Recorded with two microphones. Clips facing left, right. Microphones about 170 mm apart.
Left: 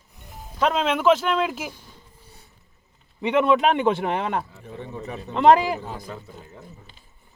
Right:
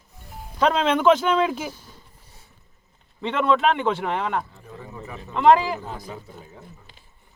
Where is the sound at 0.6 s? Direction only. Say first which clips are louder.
Right 2 dB; 5° left (ahead or behind).